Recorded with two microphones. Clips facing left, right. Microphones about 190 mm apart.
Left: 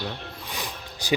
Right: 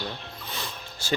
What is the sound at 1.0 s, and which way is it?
Speech, 15° left (ahead or behind).